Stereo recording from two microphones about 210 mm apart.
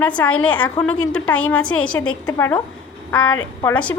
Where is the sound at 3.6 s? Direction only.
5° left (ahead or behind).